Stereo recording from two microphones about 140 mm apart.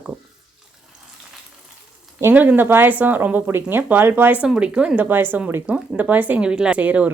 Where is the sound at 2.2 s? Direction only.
10° right (ahead or behind).